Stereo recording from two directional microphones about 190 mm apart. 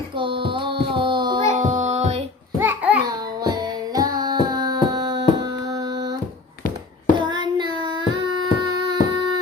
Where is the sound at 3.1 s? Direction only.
20° right (ahead or behind).